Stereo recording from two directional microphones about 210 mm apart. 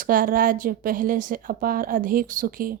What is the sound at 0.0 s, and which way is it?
A woman's voice, 40° right (ahead or behind).